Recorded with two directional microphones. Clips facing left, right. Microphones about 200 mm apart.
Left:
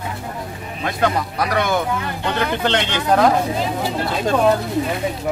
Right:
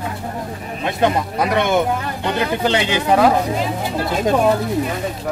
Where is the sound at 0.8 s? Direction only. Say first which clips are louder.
Right 2 dB; 20° right (ahead or behind).